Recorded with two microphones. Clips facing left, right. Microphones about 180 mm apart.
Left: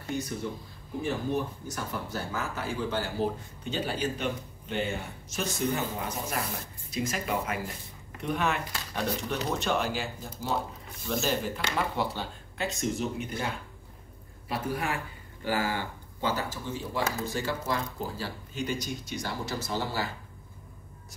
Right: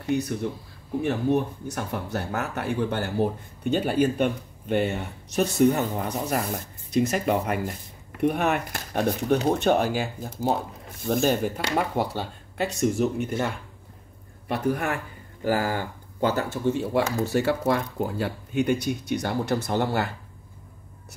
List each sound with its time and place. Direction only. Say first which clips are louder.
1.0 s speech: right 6 dB; 60° right (ahead or behind)
6.0 s speech: right 6 dB; 50° right (ahead or behind)
14.5 s speech: right 6 dB; 50° right (ahead or behind)